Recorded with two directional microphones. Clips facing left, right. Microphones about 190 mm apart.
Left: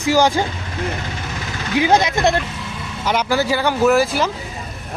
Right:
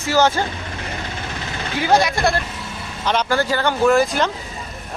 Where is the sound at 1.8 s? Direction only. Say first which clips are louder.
Left 1 dB; 20° left (ahead or behind).